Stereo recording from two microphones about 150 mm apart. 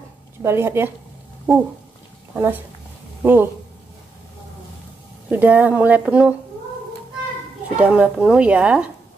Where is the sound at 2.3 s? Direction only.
10° right (ahead or behind).